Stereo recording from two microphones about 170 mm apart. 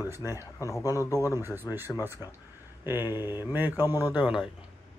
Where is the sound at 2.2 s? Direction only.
25° left (ahead or behind).